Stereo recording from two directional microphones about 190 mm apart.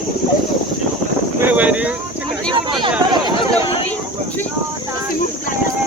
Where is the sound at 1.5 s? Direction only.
5° right (ahead or behind).